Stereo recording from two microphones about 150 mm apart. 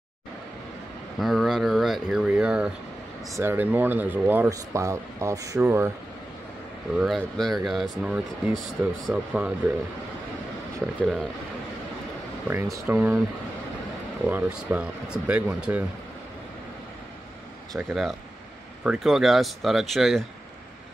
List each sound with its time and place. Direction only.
1.2 s speech: centre (ahead or behind); by 5.9 s 15° right (ahead or behind)
7.0 s speech: centre (ahead or behind)
11.0 s speech: centre (ahead or behind)
12.7 s speech: 15° right (ahead or behind)
14.2 s speech: 10° right (ahead or behind)
17.7 s speech: centre (ahead or behind)